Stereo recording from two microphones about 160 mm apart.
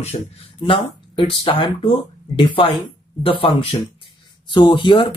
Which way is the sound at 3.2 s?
35° left (ahead or behind).